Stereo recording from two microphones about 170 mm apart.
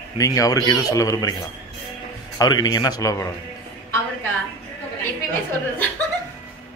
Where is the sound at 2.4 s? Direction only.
25° left (ahead or behind).